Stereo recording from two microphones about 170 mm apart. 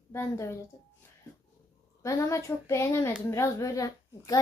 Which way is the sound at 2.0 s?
20° left (ahead or behind).